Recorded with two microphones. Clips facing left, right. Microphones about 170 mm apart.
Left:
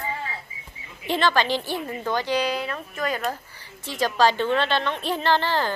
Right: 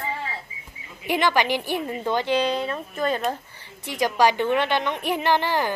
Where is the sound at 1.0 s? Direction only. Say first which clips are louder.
Even; 15° right (ahead or behind).